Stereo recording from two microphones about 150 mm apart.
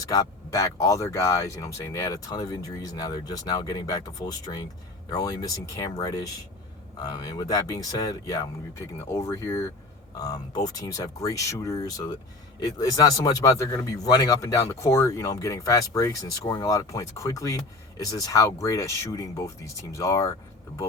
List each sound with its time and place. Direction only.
0.0 s speech: 25° left (ahead or behind)